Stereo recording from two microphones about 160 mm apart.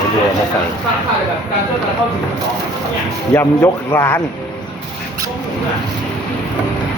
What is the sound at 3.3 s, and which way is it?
Speech, 15° left (ahead or behind).